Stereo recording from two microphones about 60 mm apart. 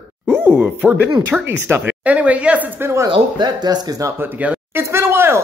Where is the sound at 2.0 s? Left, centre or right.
Right.